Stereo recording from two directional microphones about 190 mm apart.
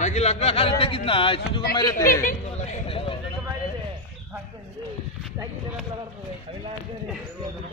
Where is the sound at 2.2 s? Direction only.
45° left (ahead or behind).